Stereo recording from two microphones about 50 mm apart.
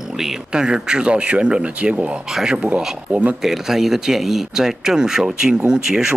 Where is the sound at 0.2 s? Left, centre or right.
Centre.